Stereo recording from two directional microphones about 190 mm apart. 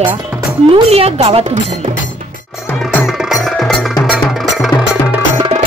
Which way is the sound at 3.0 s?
Centre (ahead or behind).